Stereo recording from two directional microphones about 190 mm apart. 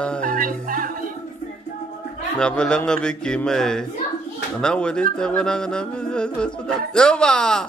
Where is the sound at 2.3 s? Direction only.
5° left (ahead or behind).